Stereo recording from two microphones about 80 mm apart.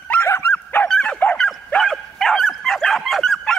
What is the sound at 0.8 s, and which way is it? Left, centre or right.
Dog, centre.